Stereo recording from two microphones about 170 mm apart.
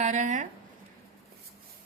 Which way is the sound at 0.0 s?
45° right (ahead or behind).